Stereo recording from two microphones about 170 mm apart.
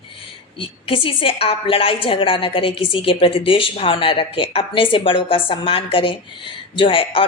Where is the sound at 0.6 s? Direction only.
30° left (ahead or behind).